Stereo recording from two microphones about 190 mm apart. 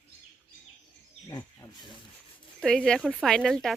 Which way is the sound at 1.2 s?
15° left (ahead or behind).